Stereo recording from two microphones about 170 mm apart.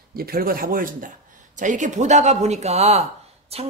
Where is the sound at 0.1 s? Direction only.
60° right (ahead or behind).